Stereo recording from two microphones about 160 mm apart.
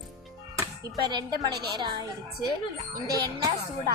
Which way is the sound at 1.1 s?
25° right (ahead or behind).